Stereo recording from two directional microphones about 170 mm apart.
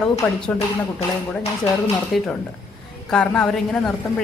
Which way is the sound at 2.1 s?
Centre (ahead or behind).